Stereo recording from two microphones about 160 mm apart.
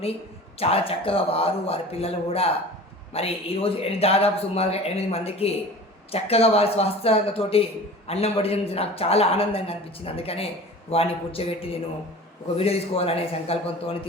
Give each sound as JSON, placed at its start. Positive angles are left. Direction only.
{"t": 0.6, "sound": "speech", "side_deg": 35}